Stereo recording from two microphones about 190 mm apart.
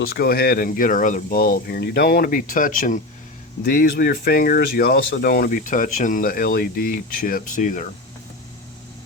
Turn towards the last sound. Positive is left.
turn(degrees=40)  # may be behind; listen again after turning